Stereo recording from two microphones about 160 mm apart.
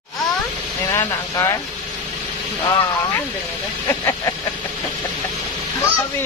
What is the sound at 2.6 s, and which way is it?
Speech, 15° left (ahead or behind).